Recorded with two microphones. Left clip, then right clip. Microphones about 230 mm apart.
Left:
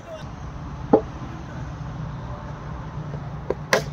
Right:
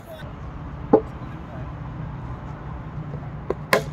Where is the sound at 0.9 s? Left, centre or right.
Centre.